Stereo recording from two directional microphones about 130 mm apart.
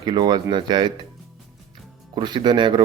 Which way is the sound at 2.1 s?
35° right (ahead or behind).